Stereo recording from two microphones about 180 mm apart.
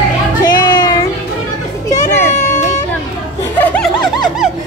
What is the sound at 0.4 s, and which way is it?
Music, 20° left (ahead or behind).